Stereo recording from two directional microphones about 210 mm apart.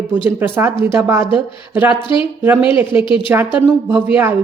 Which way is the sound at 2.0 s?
25° left (ahead or behind).